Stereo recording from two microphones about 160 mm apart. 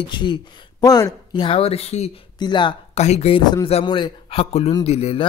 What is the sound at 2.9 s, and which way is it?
Speech, 45° left (ahead or behind).